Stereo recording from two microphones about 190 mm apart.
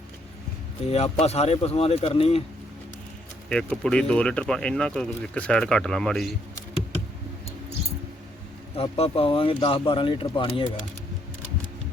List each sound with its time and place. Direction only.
0.9 s speech: 35° left (ahead or behind)
3.5 s speech: 5° left (ahead or behind)
8.7 s speech: 30° left (ahead or behind)